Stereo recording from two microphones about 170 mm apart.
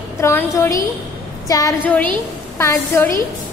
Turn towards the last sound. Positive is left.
turn(degrees=15)  # may be behind; listen again after turning